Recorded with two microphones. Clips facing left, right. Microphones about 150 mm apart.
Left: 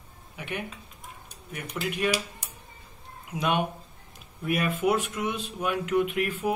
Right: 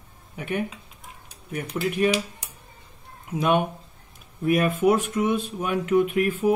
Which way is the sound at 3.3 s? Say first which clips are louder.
Right 5 dB; 50° right (ahead or behind).